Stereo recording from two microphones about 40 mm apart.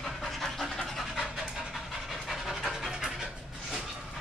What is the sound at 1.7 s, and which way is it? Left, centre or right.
Pant, centre.